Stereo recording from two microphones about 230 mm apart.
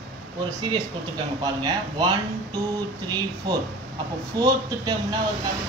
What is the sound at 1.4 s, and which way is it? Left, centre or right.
Speech, centre.